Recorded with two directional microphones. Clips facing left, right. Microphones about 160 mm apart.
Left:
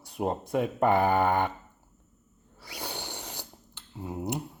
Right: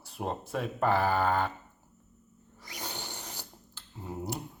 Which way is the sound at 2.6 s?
10° left (ahead or behind).